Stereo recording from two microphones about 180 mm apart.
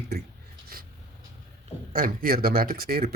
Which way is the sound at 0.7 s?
55° right (ahead or behind).